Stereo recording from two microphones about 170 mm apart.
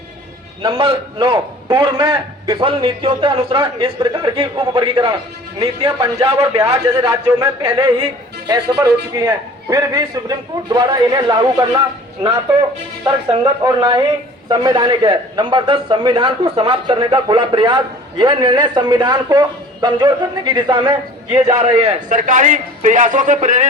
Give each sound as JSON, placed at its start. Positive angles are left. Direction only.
{"t": 0.6, "sound": "a man's voice", "side_deg": -30}
{"t": 13.4, "sound": "a man's voice", "side_deg": -20}
{"t": 21.6, "sound": "a man's voice", "side_deg": -40}